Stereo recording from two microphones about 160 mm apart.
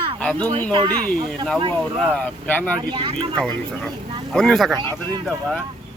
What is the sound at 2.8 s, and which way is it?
Speech, 30° right (ahead or behind).